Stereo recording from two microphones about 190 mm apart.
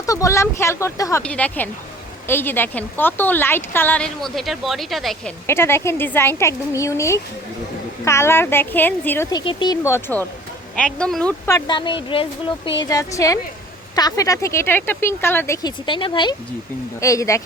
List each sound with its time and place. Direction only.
0.0 s a woman's voice: 15° left (ahead or behind); by 5.3 s centre (ahead or behind)
5.5 s a woman's voice: 15° left (ahead or behind)
9.4 s a woman's voice: 25° left (ahead or behind)
12.8 s a woman's voice: 15° left (ahead or behind)